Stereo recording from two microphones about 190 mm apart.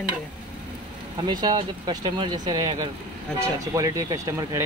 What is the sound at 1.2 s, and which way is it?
Speech, 20° right (ahead or behind).